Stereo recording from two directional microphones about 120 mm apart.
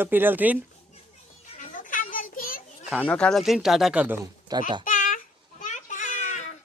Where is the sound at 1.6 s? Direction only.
90° left.